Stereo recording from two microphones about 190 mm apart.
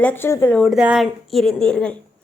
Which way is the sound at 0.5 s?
Centre (ahead or behind).